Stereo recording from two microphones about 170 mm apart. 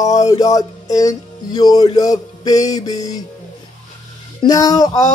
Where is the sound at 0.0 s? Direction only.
20° left (ahead or behind).